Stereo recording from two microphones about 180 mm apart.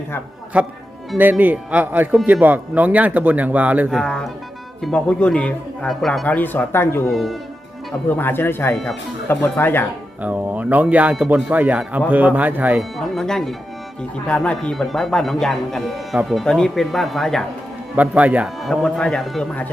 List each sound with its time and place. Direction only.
0.5 s speech: 5° right (ahead or behind)
4.0 s speech: 5° left (ahead or behind)
7.1 s speech: centre (ahead or behind)
8.1 s speech: 10° left (ahead or behind)
10.2 s speech: 10° right (ahead or behind)
13.0 s speech: centre (ahead or behind)